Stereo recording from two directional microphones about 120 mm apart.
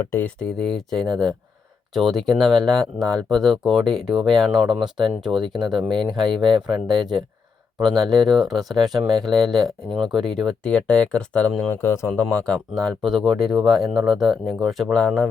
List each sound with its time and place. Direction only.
0.0 s speech: 20° left (ahead or behind)
0.3 s speech: 5° left (ahead or behind)
5.4 s speech: 40° right (ahead or behind)
5.7 s speech: centre (ahead or behind)
11.7 s speech: 20° left (ahead or behind)